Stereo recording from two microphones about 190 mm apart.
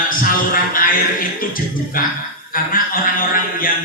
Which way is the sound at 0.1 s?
45° left (ahead or behind).